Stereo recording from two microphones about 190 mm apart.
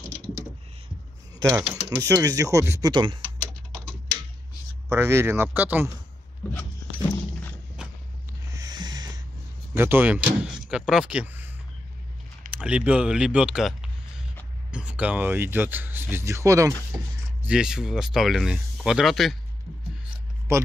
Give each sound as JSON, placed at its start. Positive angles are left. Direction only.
{"t": 1.4, "sound": "speech", "side_deg": -15}
{"t": 4.8, "sound": "speech", "side_deg": -15}
{"t": 6.4, "sound": "a sound", "side_deg": 10}
{"t": 8.5, "sound": "a sound", "side_deg": -20}
{"t": 9.8, "sound": "speech", "side_deg": -10}
{"t": 12.5, "sound": "speech", "side_deg": -5}
{"t": 17.4, "sound": "speech", "side_deg": -5}
{"t": 20.5, "sound": "speech", "side_deg": -15}